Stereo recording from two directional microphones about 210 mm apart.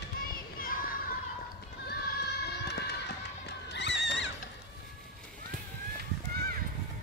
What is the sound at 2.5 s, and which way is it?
Music, 50° left (ahead or behind).